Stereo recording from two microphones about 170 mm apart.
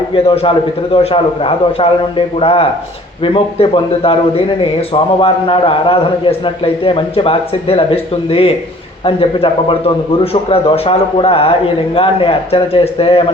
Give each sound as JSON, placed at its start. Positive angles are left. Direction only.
{"t": 0.1, "sound": "speech", "side_deg": 30}